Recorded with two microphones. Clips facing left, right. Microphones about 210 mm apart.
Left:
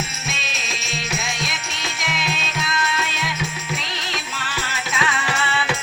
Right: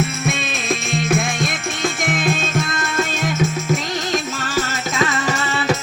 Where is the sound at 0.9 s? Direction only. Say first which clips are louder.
Right 8 dB; 50° right (ahead or behind).